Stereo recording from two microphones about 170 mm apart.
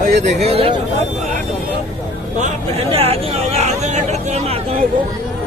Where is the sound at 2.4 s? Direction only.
35° right (ahead or behind).